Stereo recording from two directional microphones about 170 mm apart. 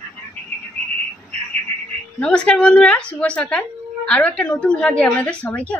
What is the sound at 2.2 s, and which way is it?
A woman's voice, 5° left (ahead or behind).